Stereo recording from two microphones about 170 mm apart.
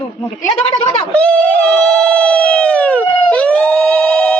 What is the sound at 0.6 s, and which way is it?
Speech, 30° left (ahead or behind).